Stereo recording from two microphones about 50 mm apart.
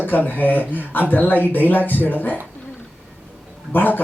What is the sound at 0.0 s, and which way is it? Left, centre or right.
Speech, left.